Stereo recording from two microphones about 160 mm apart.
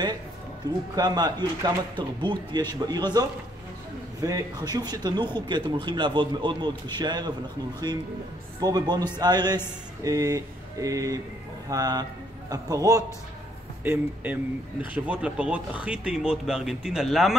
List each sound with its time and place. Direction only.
0.9 s speech: 25° right (ahead or behind)
8.5 s a man's voice: 25° right (ahead or behind)
13.8 s speech: 10° right (ahead or behind)